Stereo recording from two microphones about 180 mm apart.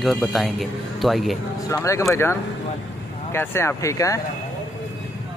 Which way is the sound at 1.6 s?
15° left (ahead or behind).